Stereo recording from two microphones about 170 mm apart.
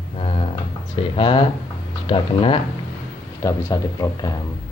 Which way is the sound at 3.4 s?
20° left (ahead or behind).